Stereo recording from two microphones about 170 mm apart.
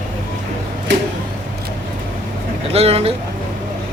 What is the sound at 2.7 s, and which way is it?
Speech, 35° right (ahead or behind).